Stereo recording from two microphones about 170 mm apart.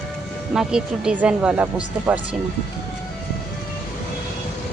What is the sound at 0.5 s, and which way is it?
A woman's voice, 5° right (ahead or behind).